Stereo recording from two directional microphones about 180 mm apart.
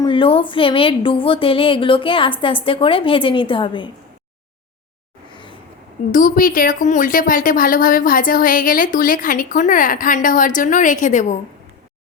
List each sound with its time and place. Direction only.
0.0 s a woman's voice: 30° left (ahead or behind)
5.3 s a sound: 25° left (ahead or behind)
6.1 s speech: 50° left (ahead or behind)